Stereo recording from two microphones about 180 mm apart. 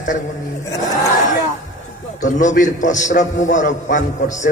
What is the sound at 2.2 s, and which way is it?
A man's voice, 45° left (ahead or behind).